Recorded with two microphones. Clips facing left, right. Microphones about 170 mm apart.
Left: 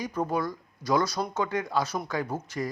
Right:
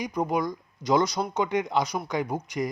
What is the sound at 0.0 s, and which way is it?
A man's voice, 15° right (ahead or behind).